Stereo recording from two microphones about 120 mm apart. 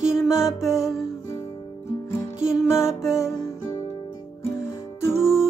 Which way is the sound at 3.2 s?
25° left (ahead or behind).